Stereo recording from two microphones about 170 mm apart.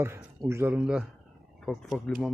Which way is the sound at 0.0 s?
15° right (ahead or behind).